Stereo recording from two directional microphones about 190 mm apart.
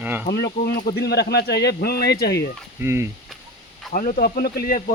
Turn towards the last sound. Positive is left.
turn(degrees=50)  # may be behind; listen again after turning